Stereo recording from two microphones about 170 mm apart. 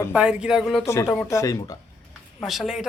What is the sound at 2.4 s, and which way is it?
Speech, centre (ahead or behind).